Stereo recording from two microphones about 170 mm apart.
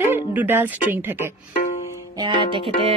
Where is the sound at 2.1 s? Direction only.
30° right (ahead or behind).